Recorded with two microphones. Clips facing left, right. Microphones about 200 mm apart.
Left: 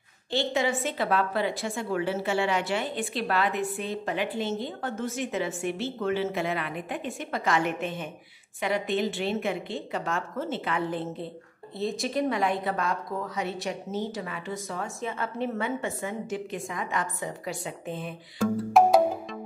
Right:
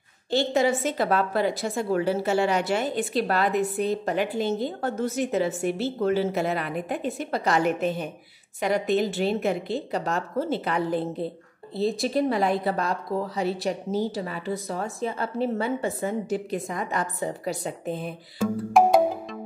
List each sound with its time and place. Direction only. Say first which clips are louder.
0.3 s a woman's voice: right 4 dB; 40° right (ahead or behind)
18.4 s music: right 1 dB; centre (ahead or behind)